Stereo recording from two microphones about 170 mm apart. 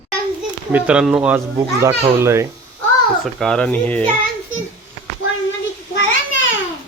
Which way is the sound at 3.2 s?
5° left (ahead or behind).